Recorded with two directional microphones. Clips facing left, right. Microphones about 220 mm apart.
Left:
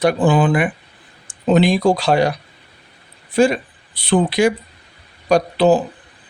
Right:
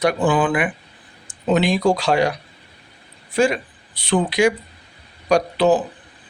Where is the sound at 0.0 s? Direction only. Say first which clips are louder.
Left 3 dB; 25° left (ahead or behind).